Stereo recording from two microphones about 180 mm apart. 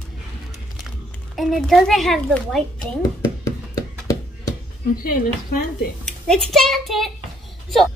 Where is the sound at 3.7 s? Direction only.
20° left (ahead or behind).